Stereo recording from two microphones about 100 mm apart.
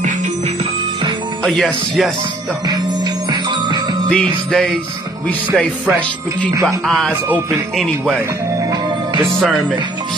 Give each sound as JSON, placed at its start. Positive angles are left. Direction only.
{"t": 1.4, "sound": "speech", "side_deg": 5}
{"t": 3.3, "sound": "music", "side_deg": -50}
{"t": 4.1, "sound": "music", "side_deg": 10}
{"t": 9.2, "sound": "speech", "side_deg": 0}